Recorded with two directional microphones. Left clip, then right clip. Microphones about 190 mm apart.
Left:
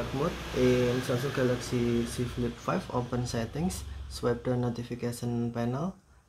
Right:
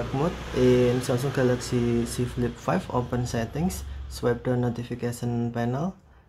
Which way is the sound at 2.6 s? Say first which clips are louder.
Right 5 dB; 15° right (ahead or behind).